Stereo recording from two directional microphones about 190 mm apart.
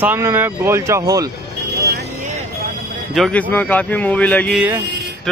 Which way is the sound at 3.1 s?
5° left (ahead or behind).